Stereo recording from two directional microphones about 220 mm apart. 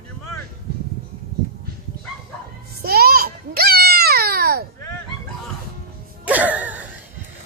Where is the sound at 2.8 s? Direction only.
45° right (ahead or behind).